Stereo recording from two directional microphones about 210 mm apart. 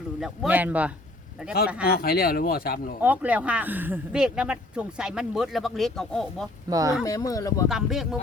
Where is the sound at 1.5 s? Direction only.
45° left (ahead or behind).